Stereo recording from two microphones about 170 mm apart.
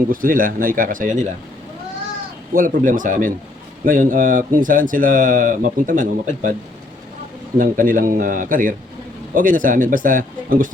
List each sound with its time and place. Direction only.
0.1 s speech: 55° right (ahead or behind)
2.5 s speech: 55° right (ahead or behind)
7.6 s speech: 55° right (ahead or behind)